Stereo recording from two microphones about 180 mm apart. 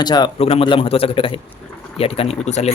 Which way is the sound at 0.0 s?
25° left (ahead or behind).